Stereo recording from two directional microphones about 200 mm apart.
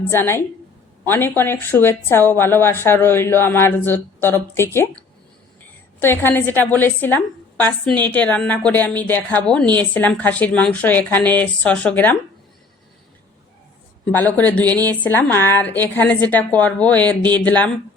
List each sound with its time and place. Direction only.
0.1 s a woman's voice: 10° left (ahead or behind)
6.0 s a woman's voice: 10° left (ahead or behind)
14.0 s a woman's voice: 10° left (ahead or behind)